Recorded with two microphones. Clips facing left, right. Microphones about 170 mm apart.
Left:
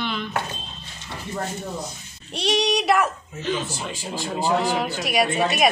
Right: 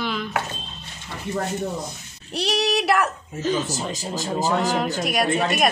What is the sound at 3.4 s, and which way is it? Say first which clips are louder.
Speech: right 4 dB; 40° right (ahead or behind).